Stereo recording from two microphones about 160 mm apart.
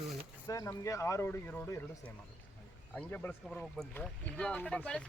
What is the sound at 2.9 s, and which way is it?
Speech, 10° left (ahead or behind).